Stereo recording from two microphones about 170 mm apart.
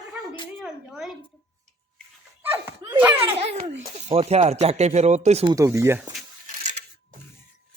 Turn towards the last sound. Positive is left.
turn(degrees=-45)  # may be behind; listen again after turning